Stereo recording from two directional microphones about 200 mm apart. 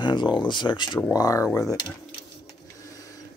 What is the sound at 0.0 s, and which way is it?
Speech, 20° left (ahead or behind).